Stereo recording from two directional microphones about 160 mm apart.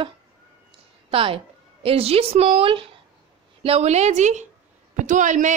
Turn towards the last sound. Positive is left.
turn(degrees=-50)  # may be behind; listen again after turning